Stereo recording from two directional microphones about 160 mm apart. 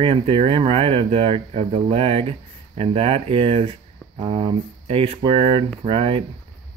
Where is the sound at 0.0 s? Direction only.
35° right (ahead or behind).